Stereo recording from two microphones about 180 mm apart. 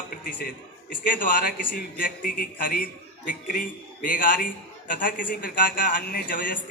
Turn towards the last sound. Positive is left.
turn(degrees=50)  # may be behind; listen again after turning